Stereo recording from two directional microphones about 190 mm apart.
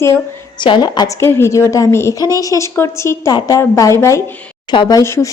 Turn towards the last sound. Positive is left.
turn(degrees=15)  # may be behind; listen again after turning